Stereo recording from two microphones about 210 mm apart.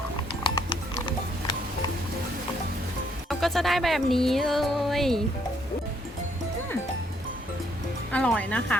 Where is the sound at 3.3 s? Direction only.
Centre (ahead or behind).